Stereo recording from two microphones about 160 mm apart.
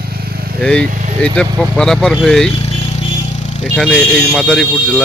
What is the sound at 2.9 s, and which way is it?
Vehicle, 45° left (ahead or behind).